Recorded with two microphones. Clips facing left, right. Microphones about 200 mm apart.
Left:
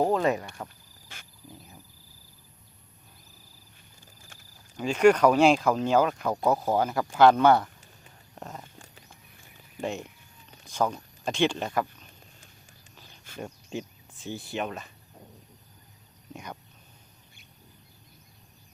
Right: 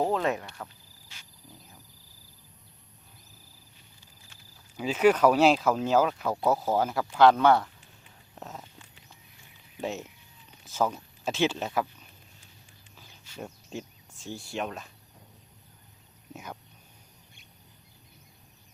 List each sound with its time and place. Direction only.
0.0 s speech: centre (ahead or behind)
1.0 s wild animals: 55° left (ahead or behind)
4.8 s speech: 5° right (ahead or behind)
8.4 s a sound: centre (ahead or behind)
8.8 s horse: 45° left (ahead or behind)
9.8 s speech: centre (ahead or behind)
13.4 s speech: centre (ahead or behind)
16.3 s a sound: 5° right (ahead or behind)